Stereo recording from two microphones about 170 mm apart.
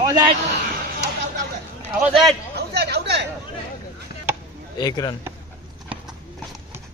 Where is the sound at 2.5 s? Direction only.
70° right (ahead or behind).